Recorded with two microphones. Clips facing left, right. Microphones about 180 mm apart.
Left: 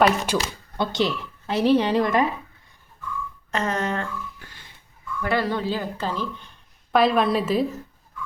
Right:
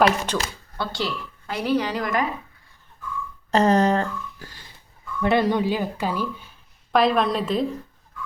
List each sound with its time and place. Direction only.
0.0 s speech: 5° left (ahead or behind)
0.8 s a woman's voice: 20° left (ahead or behind)
3.5 s speech: 35° right (ahead or behind)
5.2 s a woman's voice: 20° right (ahead or behind); by 7.8 s 5° left (ahead or behind)